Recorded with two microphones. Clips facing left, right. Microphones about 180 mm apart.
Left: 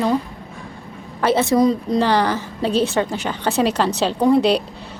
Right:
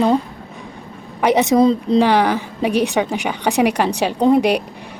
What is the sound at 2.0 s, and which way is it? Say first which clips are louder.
Speech: right 3 dB; 15° right (ahead or behind).